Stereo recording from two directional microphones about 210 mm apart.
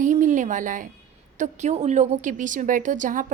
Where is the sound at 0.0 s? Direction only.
35° right (ahead or behind).